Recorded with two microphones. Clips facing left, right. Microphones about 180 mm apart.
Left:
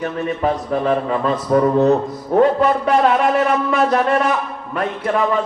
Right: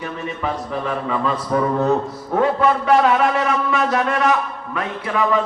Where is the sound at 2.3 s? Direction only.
40° left (ahead or behind).